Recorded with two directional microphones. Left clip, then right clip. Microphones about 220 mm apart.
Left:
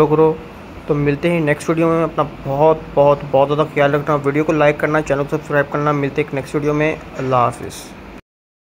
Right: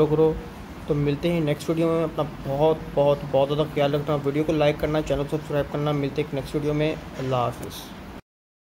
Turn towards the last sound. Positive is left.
turn(degrees=10)  # may be behind; listen again after turning